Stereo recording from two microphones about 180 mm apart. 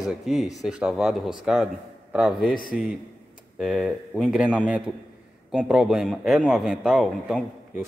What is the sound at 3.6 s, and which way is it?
A man's voice, 5° right (ahead or behind).